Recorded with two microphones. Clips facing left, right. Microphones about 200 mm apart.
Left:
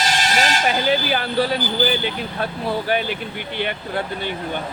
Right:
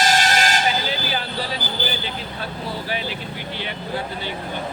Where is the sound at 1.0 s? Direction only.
60° left (ahead or behind).